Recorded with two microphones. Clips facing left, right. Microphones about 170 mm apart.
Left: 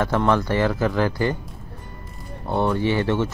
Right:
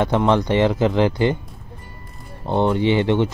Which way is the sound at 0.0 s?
20° right (ahead or behind).